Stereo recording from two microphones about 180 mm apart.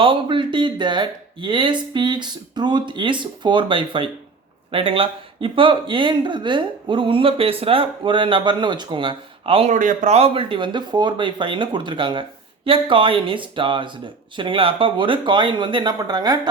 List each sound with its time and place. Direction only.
0.0 s speech: 30° right (ahead or behind)
9.7 s speech: 45° right (ahead or behind); by 16.5 s 25° right (ahead or behind)